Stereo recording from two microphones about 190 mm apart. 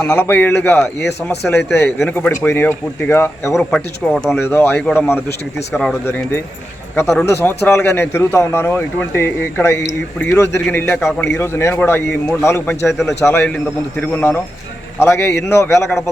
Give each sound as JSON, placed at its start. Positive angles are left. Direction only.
{"t": 0.0, "sound": "speech", "side_deg": 10}
{"t": 0.9, "sound": "speech", "side_deg": 60}
{"t": 1.5, "sound": "speech", "side_deg": 10}
{"t": 6.1, "sound": "speech", "side_deg": 10}